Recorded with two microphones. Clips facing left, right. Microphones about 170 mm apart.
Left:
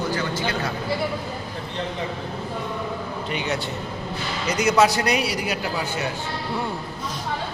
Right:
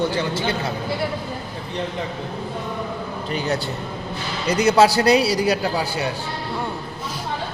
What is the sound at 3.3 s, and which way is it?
A man's voice, 35° right (ahead or behind).